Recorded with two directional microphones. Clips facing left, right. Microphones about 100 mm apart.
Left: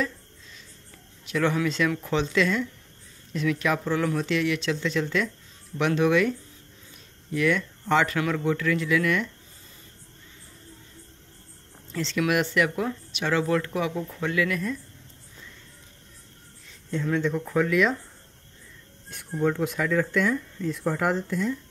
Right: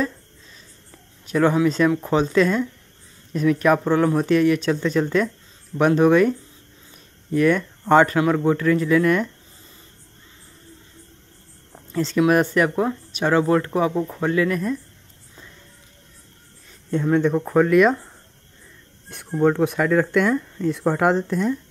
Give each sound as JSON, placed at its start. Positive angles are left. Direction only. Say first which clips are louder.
{"t": 1.2, "sound": "speech", "louder": "right 7 dB", "side_deg": -40}
{"t": 11.9, "sound": "speech", "louder": "right 7 dB", "side_deg": -40}
{"t": 16.9, "sound": "speech", "louder": "right 7 dB", "side_deg": -45}
{"t": 19.3, "sound": "speech", "louder": "right 7 dB", "side_deg": -55}